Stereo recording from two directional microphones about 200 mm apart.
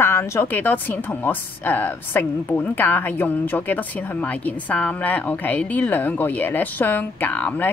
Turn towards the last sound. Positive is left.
turn(degrees=5)  # may be behind; listen again after turning